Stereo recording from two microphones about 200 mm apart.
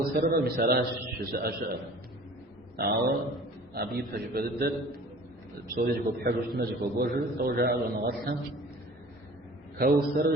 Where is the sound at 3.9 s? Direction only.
50° right (ahead or behind).